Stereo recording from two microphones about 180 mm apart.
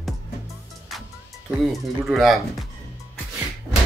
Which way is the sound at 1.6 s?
Centre (ahead or behind).